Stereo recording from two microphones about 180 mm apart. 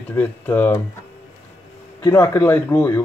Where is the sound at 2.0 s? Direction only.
15° left (ahead or behind).